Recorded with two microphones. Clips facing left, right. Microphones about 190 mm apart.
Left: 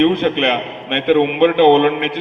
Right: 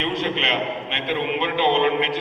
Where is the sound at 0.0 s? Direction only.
60° left (ahead or behind).